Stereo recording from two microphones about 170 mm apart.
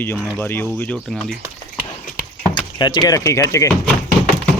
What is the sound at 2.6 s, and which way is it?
Speech, 25° left (ahead or behind).